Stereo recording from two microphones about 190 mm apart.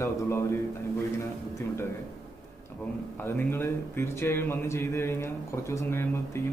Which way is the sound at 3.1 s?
10° left (ahead or behind).